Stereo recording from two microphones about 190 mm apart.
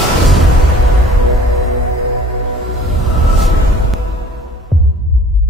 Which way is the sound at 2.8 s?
Centre (ahead or behind).